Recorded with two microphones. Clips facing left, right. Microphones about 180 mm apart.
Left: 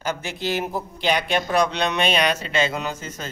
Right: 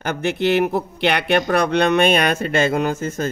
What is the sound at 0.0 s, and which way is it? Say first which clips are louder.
Speech: right 7 dB; 60° right (ahead or behind).